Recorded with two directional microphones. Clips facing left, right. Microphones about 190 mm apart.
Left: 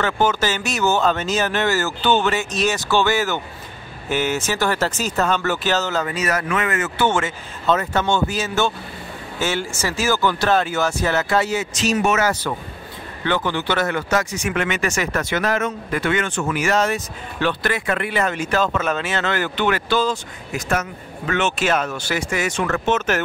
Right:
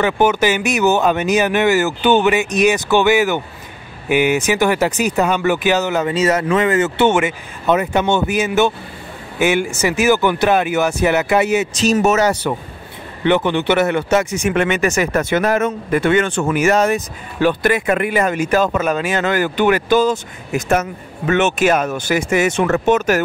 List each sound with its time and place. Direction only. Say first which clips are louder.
0.0 s speech: right 5 dB; 15° right (ahead or behind)
11.7 s speech: right 2 dB; 40° right (ahead or behind)
13.2 s speech: right 7 dB; 20° right (ahead or behind)
16.6 s speech: right 5 dB; 15° right (ahead or behind)